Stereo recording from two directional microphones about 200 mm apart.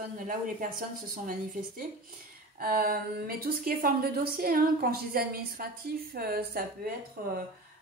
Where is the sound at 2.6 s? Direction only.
45° right (ahead or behind).